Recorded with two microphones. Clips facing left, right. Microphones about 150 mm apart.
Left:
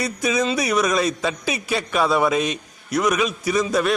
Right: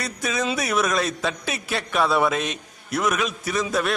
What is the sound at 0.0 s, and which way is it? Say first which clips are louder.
Speech: left 4 dB; centre (ahead or behind).